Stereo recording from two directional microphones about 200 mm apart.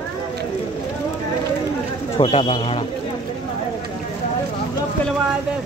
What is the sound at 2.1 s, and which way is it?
Speech, 30° left (ahead or behind).